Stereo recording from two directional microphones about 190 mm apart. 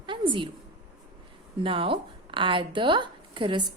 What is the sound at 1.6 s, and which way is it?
Speech, 25° right (ahead or behind).